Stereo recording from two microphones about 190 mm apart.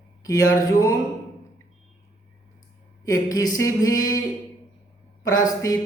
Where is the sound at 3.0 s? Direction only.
20° left (ahead or behind).